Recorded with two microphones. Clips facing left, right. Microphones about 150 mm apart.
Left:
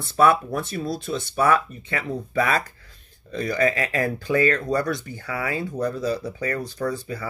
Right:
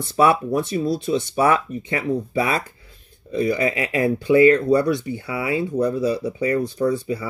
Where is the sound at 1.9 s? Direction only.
20° right (ahead or behind).